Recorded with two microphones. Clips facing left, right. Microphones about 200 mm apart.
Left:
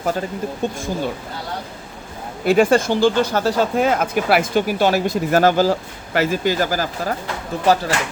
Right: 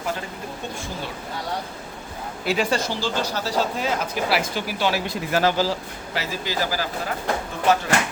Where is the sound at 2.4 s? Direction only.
50° left (ahead or behind).